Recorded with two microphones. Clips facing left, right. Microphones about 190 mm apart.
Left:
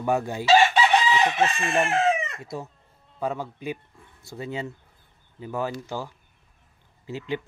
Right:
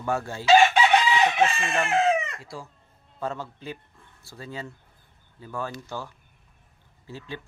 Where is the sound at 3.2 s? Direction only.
15° left (ahead or behind).